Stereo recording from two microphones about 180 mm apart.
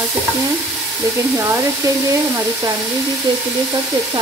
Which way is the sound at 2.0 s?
20° right (ahead or behind).